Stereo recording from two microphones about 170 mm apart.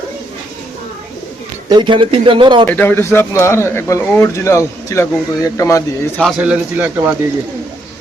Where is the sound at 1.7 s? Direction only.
25° right (ahead or behind).